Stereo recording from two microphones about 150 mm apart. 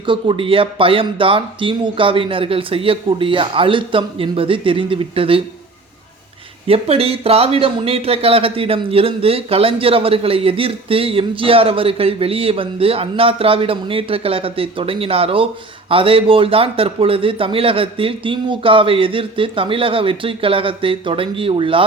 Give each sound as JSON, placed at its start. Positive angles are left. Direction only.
{"t": 0.0, "sound": "speech", "side_deg": -35}
{"t": 6.7, "sound": "speech", "side_deg": -40}